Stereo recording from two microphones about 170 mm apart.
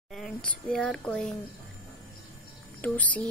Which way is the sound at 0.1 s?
5° left (ahead or behind).